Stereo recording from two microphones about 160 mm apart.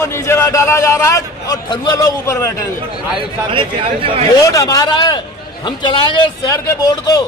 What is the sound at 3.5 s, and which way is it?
Speech, 35° right (ahead or behind).